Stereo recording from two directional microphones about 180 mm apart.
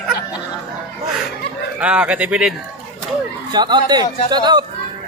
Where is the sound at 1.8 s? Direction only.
5° right (ahead or behind).